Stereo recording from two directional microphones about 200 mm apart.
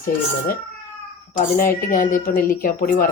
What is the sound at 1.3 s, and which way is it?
Speech, 45° left (ahead or behind).